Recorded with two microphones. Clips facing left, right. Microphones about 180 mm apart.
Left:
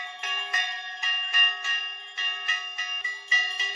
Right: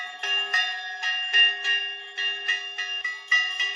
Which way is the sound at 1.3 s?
60° right (ahead or behind).